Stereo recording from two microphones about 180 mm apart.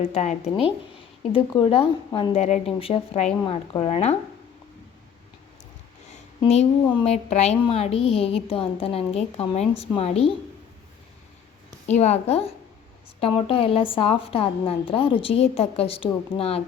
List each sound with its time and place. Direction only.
0.0 s a woman's voice: 40° left (ahead or behind)
6.4 s a woman's voice: 35° left (ahead or behind)
11.9 s a woman's voice: 35° left (ahead or behind)